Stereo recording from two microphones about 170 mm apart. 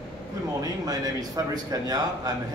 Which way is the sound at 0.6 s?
20° right (ahead or behind).